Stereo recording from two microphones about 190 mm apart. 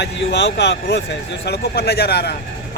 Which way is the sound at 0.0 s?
70° left (ahead or behind).